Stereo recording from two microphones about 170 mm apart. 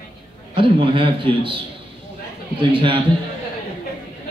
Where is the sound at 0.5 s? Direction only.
30° right (ahead or behind).